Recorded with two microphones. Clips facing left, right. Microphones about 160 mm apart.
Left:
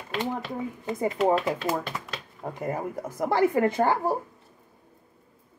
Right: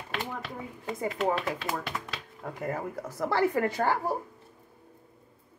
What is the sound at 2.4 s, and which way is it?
A woman's voice, 20° left (ahead or behind).